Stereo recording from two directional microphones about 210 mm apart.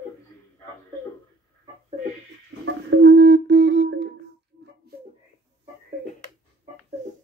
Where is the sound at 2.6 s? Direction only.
60° right (ahead or behind).